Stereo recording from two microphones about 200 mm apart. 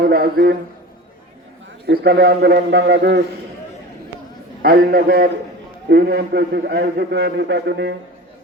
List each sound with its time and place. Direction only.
0.0 s a man's voice: 50° right (ahead or behind)
1.9 s a man's voice: 50° right (ahead or behind)
4.6 s a man's voice: 50° right (ahead or behind)